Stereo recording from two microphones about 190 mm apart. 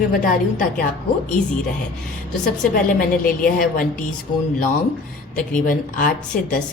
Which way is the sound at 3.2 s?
45° left (ahead or behind).